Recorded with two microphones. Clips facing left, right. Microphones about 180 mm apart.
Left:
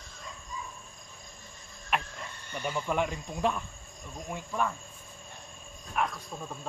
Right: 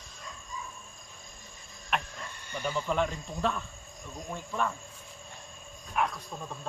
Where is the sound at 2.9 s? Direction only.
10° left (ahead or behind).